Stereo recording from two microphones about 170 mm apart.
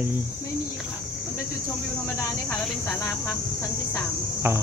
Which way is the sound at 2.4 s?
15° left (ahead or behind).